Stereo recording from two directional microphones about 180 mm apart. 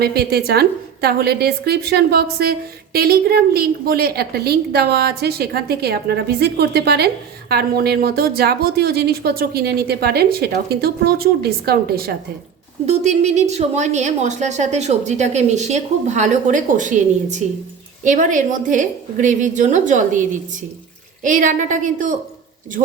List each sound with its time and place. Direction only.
0.0 s a woman's voice: 60° right (ahead or behind)
12.8 s a woman's voice: 35° right (ahead or behind)
21.2 s a woman's voice: 45° right (ahead or behind)